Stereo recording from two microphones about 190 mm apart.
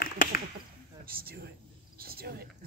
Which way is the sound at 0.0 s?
50° left (ahead or behind).